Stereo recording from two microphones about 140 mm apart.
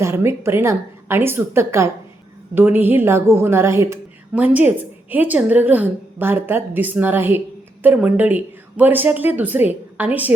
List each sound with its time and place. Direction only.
0.0 s a woman's voice: 20° right (ahead or behind)